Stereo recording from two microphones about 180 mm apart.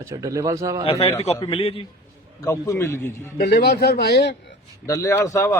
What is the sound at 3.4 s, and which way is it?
Speech, 65° left (ahead or behind).